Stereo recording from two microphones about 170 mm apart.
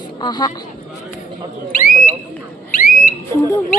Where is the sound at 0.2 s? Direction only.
25° left (ahead or behind).